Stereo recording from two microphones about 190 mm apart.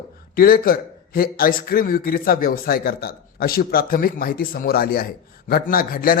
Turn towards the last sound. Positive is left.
turn(degrees=50)  # may be behind; listen again after turning